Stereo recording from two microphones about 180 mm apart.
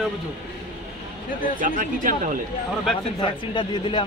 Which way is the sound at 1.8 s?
45° right (ahead or behind).